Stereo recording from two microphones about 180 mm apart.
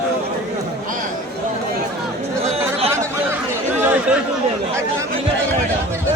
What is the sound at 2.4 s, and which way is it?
Chatter, 35° right (ahead or behind).